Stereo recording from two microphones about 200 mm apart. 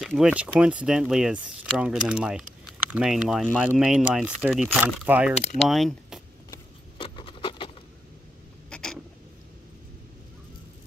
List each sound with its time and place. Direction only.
0.0 s speech: 5° right (ahead or behind)
6.5 s keys jangling: 25° left (ahead or behind)
8.6 s a sound: 5° left (ahead or behind)